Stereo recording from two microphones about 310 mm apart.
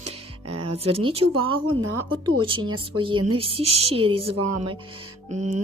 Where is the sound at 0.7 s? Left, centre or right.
Centre.